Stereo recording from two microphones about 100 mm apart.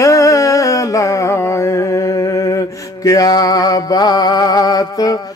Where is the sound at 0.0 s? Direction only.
30° left (ahead or behind).